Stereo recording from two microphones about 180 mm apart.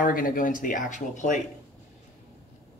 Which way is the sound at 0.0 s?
50° left (ahead or behind).